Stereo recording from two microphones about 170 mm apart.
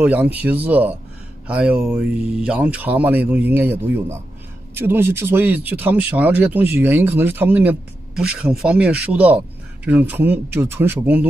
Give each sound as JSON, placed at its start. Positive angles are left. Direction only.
{"t": 0.0, "sound": "speech", "side_deg": -10}